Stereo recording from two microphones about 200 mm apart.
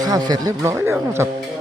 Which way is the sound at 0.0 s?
20° right (ahead or behind).